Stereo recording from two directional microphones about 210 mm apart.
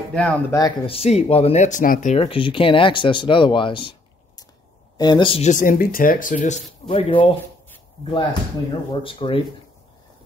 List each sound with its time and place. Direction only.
0.1 s speech: 5° left (ahead or behind)
0.6 s speech: 25° left (ahead or behind)
4.9 s speech: 20° left (ahead or behind)